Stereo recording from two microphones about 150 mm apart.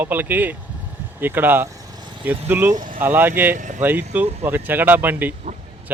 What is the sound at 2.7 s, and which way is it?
Speech, 60° right (ahead or behind).